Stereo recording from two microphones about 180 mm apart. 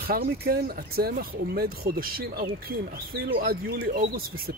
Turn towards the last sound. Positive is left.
turn(degrees=-55)  # may be behind; listen again after turning